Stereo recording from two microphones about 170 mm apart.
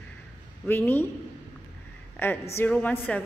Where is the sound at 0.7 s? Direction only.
15° left (ahead or behind).